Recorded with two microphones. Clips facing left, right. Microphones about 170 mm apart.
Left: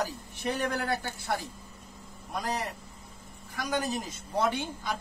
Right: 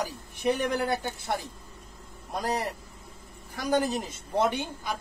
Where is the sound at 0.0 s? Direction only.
15° right (ahead or behind).